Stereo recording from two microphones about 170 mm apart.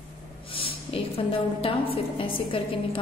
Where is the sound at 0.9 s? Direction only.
35° left (ahead or behind).